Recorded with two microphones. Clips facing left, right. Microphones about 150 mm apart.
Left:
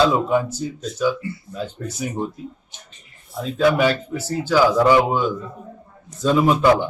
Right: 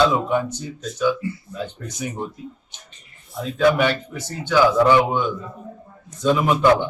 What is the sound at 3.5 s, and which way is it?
Speech, 5° left (ahead or behind).